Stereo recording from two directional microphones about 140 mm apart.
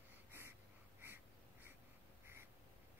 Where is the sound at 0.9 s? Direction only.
15° right (ahead or behind).